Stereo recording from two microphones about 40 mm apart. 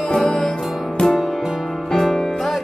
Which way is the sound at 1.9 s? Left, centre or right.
Centre.